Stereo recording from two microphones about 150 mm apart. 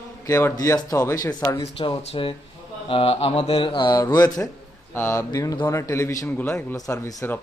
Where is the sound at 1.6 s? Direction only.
40° left (ahead or behind).